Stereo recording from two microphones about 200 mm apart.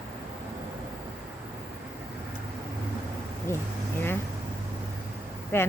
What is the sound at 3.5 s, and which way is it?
Speech, 15° left (ahead or behind).